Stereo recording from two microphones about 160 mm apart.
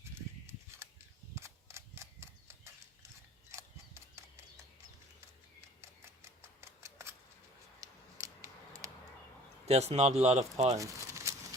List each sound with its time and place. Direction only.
1.4 s cap gun: 15° right (ahead or behind)
3.5 s a sound: 15° right (ahead or behind)
6.2 s typewriter: 15° right (ahead or behind)
7.8 s a sound: 20° right (ahead or behind)
9.6 s speech: 40° right (ahead or behind)
10.7 s crumpling: 20° right (ahead or behind)